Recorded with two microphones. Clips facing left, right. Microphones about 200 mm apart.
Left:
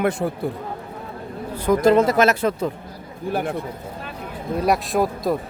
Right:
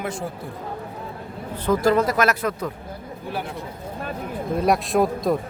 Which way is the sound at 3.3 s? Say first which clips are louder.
Left 6 dB; 50° left (ahead or behind).